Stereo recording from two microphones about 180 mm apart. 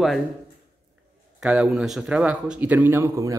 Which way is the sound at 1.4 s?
5° right (ahead or behind).